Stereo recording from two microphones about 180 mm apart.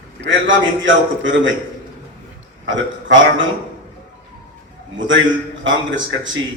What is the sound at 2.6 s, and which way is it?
Speech, 90° right.